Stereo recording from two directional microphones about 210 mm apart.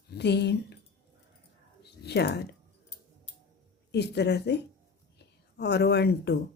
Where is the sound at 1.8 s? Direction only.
50° left (ahead or behind).